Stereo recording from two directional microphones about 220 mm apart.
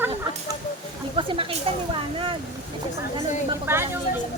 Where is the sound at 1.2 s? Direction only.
25° right (ahead or behind).